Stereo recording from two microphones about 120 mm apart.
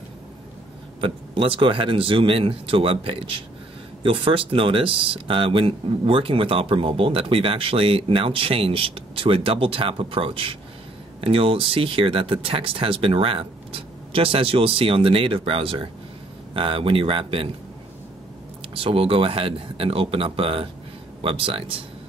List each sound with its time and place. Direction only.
1.0 s speech: 50° right (ahead or behind)
18.7 s speech: 50° right (ahead or behind)